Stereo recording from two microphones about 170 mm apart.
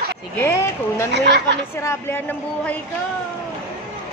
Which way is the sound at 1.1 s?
90° right.